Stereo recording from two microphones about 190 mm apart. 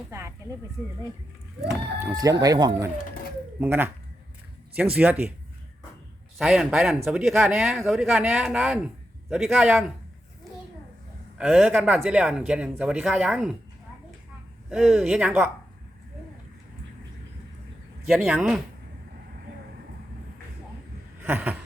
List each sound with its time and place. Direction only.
0.1 s a sound: 15° right (ahead or behind)
2.4 s speech: 20° right (ahead or behind)
6.4 s speech: 5° right (ahead or behind)
11.3 s speech: centre (ahead or behind)
14.7 s speech: centre (ahead or behind)
18.1 s speech: centre (ahead or behind)
21.2 s a sound: 10° right (ahead or behind)